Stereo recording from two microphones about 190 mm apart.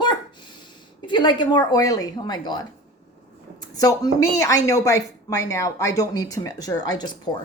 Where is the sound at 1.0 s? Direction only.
25° left (ahead or behind).